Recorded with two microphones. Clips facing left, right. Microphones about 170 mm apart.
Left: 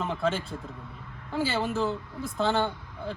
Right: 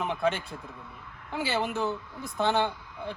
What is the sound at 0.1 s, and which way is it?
Speech, centre (ahead or behind).